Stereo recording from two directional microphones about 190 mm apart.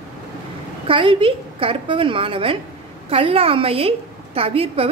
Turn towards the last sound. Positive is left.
turn(degrees=-30)  # may be behind; listen again after turning